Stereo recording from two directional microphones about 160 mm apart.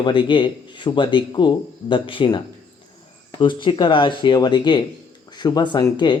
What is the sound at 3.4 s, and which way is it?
Speech, 30° left (ahead or behind).